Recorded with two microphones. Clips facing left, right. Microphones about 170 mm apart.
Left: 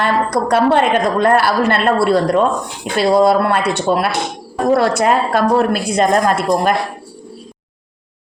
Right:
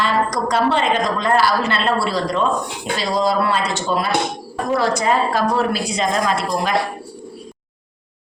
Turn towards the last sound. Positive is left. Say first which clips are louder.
# left 6 dB
turn(degrees=50)  # may be behind; listen again after turning